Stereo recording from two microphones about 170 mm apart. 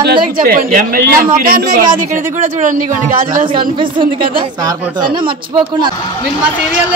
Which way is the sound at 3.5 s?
30° right (ahead or behind).